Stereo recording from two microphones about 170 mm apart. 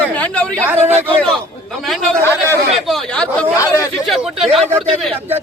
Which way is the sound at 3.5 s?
20° left (ahead or behind).